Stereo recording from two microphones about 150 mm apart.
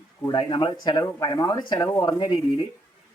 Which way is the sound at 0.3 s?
30° left (ahead or behind).